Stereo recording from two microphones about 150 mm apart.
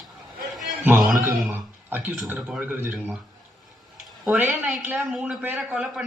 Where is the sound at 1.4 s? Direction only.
10° right (ahead or behind).